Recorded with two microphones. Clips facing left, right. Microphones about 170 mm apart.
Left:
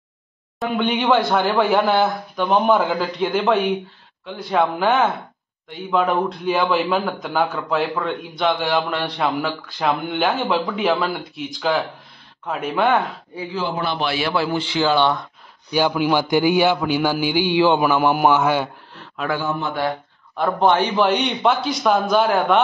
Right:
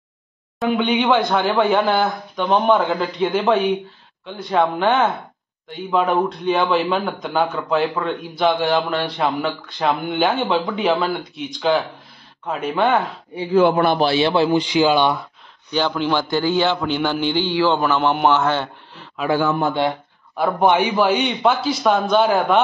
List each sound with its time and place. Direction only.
0.6 s a man's voice: centre (ahead or behind)
13.5 s a man's voice: 60° right (ahead or behind)
13.9 s speech: 30° right (ahead or behind); by 15.2 s 15° right (ahead or behind)
15.7 s a man's voice: 10° left (ahead or behind)
19.2 s a man's voice: 10° right (ahead or behind)